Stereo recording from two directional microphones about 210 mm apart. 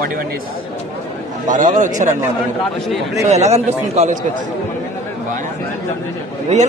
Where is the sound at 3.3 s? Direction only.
30° right (ahead or behind).